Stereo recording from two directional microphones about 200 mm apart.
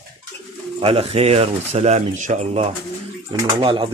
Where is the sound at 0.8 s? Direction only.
30° right (ahead or behind).